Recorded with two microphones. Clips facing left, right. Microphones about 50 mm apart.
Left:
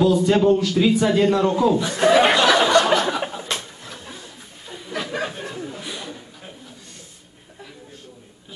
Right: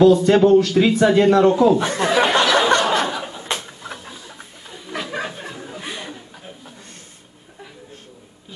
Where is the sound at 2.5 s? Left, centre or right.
Right.